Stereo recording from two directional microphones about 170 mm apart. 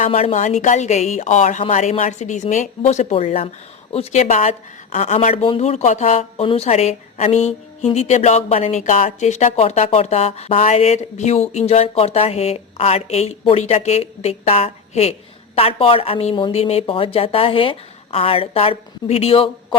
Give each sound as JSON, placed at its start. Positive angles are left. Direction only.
{"t": 0.0, "sound": "a woman's voice", "side_deg": 40}